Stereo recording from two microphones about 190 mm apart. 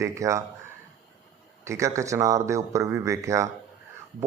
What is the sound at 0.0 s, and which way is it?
Speech, 15° right (ahead or behind).